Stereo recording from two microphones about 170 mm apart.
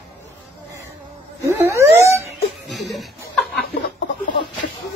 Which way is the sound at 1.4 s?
15° right (ahead or behind).